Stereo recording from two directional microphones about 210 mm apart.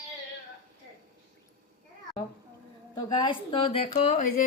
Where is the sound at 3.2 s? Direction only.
25° left (ahead or behind).